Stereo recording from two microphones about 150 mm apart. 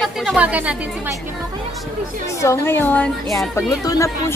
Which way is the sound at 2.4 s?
15° left (ahead or behind).